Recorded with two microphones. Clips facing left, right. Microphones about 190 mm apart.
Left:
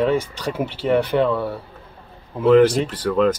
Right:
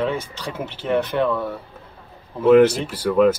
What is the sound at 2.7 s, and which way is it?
Speech, 10° right (ahead or behind).